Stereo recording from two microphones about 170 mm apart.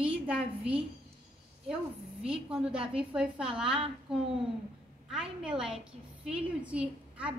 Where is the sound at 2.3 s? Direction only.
5° right (ahead or behind).